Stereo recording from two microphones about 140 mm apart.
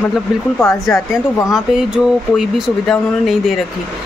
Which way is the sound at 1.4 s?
5° right (ahead or behind).